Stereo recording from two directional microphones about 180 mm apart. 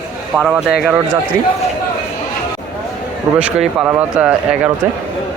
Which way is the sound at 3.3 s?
5° right (ahead or behind).